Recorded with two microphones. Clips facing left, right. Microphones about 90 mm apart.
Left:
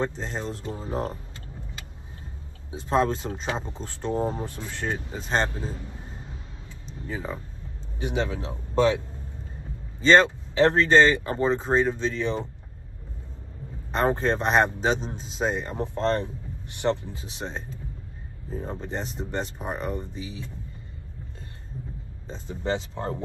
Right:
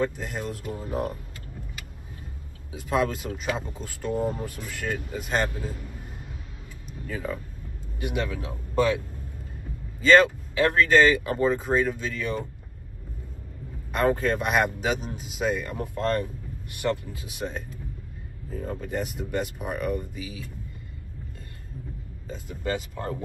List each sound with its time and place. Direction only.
0.0 s a man's voice: 30° left (ahead or behind)
2.7 s a man's voice: 30° left (ahead or behind)
10.0 s a man's voice: 25° left (ahead or behind)
13.9 s a man's voice: 30° left (ahead or behind)
22.3 s a man's voice: 25° left (ahead or behind)